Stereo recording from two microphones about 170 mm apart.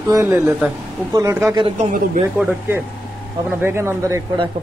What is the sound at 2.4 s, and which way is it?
A man's voice, 10° right (ahead or behind).